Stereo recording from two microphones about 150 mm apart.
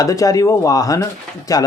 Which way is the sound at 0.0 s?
25° left (ahead or behind).